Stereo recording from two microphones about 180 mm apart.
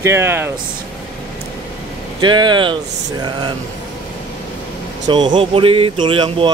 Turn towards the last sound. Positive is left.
turn(degrees=-30)  # may be behind; listen again after turning